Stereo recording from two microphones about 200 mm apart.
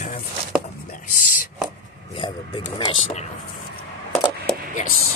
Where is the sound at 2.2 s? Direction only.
30° left (ahead or behind).